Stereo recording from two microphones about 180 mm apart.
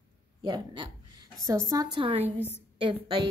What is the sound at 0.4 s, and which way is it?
A woman's voice, 25° right (ahead or behind).